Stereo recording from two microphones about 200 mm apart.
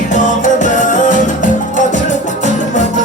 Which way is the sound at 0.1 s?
40° left (ahead or behind).